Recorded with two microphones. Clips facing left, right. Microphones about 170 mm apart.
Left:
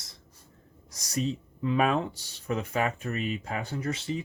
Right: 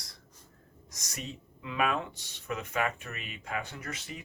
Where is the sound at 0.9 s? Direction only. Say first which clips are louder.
Left 13 dB; 35° left (ahead or behind).